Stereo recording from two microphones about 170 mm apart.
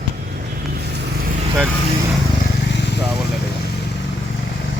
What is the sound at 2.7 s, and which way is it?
Vehicle, 90° left.